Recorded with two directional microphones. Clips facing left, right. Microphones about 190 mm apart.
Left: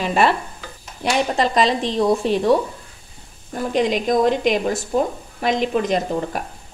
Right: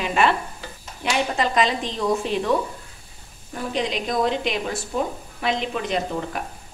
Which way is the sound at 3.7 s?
50° left (ahead or behind).